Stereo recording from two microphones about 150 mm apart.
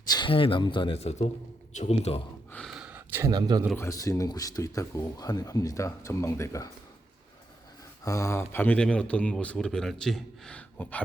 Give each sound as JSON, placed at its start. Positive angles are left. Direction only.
{"t": 0.1, "sound": "a man's voice", "side_deg": 35}
{"t": 2.5, "sound": "gasp", "side_deg": 5}
{"t": 3.8, "sound": "speech", "side_deg": 20}
{"t": 8.0, "sound": "speech", "side_deg": 20}